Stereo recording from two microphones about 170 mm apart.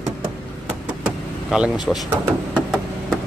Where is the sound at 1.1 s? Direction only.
5° right (ahead or behind).